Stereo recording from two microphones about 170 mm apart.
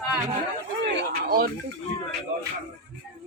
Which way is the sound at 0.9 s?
80° right.